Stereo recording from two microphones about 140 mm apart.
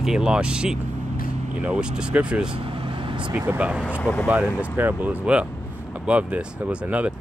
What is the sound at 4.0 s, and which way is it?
Speech, 10° left (ahead or behind).